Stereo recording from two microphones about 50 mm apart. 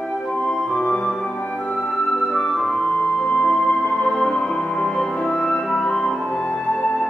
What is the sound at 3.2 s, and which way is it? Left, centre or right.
Music, left.